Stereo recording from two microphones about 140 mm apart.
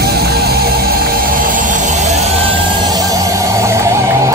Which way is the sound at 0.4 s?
90° right.